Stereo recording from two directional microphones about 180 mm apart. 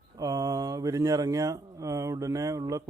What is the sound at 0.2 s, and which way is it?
A man's voice, 20° right (ahead or behind).